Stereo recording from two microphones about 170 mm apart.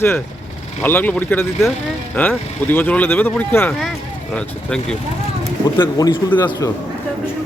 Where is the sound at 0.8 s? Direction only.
10° left (ahead or behind).